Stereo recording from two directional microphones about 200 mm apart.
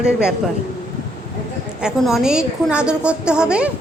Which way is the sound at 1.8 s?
Centre (ahead or behind).